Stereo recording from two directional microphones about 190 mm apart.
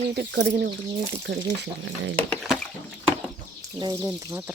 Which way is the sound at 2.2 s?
Centre (ahead or behind).